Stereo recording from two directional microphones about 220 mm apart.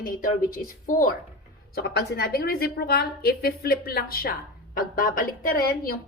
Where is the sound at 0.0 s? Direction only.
40° left (ahead or behind).